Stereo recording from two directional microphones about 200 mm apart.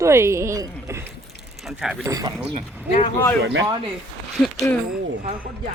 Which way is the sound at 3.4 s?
65° right (ahead or behind).